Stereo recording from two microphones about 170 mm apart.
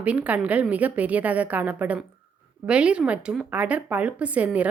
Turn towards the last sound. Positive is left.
turn(degrees=-10)  # may be behind; listen again after turning